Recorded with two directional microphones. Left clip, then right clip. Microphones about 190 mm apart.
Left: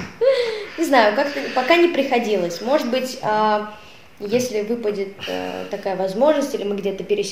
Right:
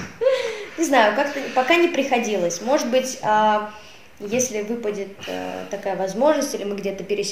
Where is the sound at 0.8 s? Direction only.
5° right (ahead or behind).